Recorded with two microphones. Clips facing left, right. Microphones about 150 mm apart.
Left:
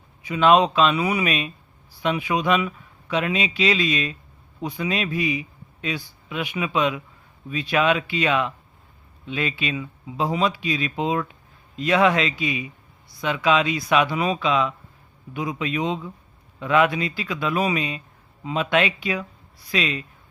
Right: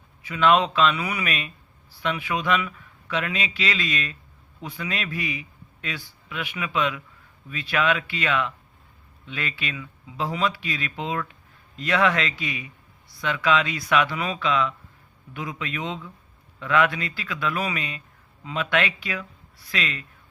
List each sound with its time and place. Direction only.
0.2 s speech: 20° left (ahead or behind)